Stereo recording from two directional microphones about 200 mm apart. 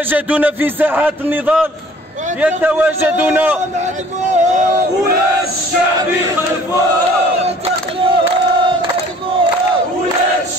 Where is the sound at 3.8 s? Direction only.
35° right (ahead or behind).